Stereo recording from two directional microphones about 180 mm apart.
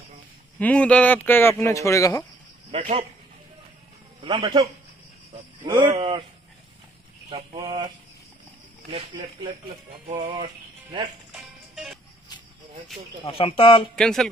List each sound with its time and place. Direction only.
0.6 s speech: 10° left (ahead or behind)
2.7 s speech: 35° right (ahead or behind)
4.2 s speech: 20° right (ahead or behind)
7.5 s speech: 20° right (ahead or behind)
8.9 s speech: 30° right (ahead or behind)
10.3 s speech: 30° right (ahead or behind)
11.3 s music: centre (ahead or behind)
13.3 s speech: 30° left (ahead or behind)
13.9 s speech: 5° left (ahead or behind)